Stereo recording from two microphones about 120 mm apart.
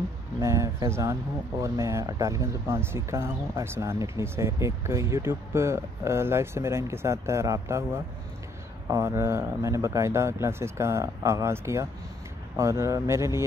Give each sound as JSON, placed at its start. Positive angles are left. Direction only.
{"t": 0.4, "sound": "speech", "side_deg": -25}